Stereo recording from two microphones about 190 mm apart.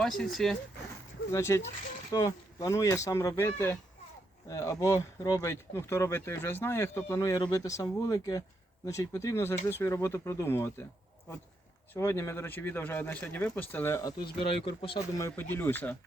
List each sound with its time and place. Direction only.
0.0 s speech: centre (ahead or behind)
1.3 s speech: 15° left (ahead or behind)
11.9 s speech: 15° left (ahead or behind)
14.4 s speech: 30° left (ahead or behind)
15.2 s speech: 10° left (ahead or behind)